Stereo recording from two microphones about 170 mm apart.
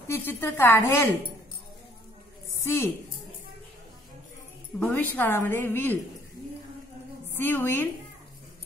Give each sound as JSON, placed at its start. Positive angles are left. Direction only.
{"t": 0.1, "sound": "a woman's voice", "side_deg": 15}
{"t": 2.6, "sound": "a woman's voice", "side_deg": 15}
{"t": 4.7, "sound": "a woman's voice", "side_deg": 10}
{"t": 7.3, "sound": "a woman's voice", "side_deg": 15}